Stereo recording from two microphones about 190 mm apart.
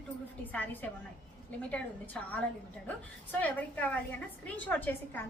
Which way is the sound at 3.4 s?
10° left (ahead or behind).